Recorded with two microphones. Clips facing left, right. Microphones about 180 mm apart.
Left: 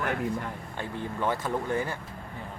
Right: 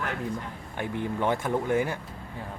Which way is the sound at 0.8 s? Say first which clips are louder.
Right 3 dB; 20° right (ahead or behind).